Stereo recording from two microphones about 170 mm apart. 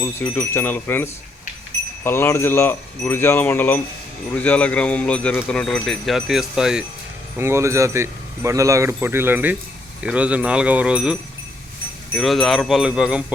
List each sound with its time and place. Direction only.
0.0 s speech: 15° left (ahead or behind); by 6.8 s 5° right (ahead or behind)
7.3 s speech: 15° right (ahead or behind)